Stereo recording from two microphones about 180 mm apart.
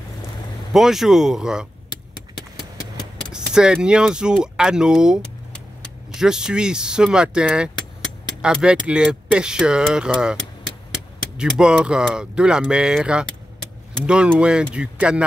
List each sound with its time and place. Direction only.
0.7 s speech: centre (ahead or behind)
3.5 s speech: 5° right (ahead or behind)
11.3 s speech: 5° right (ahead or behind)